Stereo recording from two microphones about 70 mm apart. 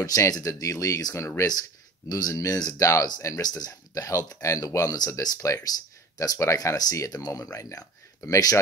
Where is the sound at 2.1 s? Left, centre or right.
Left.